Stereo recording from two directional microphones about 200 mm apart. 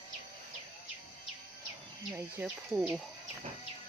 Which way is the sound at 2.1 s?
5° right (ahead or behind).